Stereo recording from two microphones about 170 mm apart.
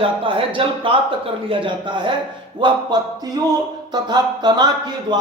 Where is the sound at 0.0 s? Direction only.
30° right (ahead or behind).